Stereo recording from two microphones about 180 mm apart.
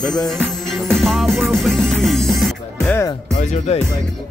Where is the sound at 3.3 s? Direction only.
40° left (ahead or behind).